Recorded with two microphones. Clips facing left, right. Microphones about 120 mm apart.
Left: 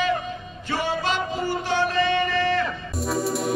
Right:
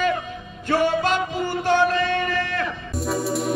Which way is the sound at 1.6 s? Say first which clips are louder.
Right 5 dB; 50° right (ahead or behind).